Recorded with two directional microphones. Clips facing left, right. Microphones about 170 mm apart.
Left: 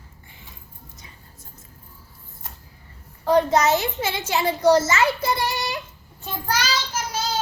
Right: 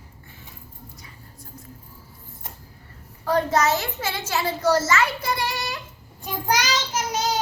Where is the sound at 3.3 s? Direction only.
20° left (ahead or behind).